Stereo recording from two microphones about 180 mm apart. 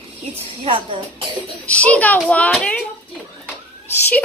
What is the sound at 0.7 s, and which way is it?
Speech, 30° right (ahead or behind).